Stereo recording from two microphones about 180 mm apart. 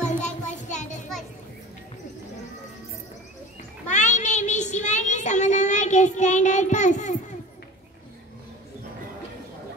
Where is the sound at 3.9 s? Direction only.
40° left (ahead or behind).